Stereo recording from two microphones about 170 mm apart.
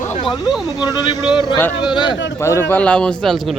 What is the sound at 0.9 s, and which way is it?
A man's voice, 20° left (ahead or behind).